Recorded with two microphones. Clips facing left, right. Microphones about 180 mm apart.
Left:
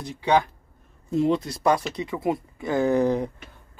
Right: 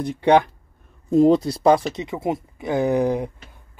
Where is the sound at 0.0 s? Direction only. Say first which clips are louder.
Right 6 dB; 60° right (ahead or behind).